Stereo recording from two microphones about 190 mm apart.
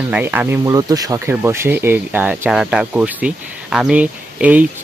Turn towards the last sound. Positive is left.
turn(degrees=-10)  # may be behind; listen again after turning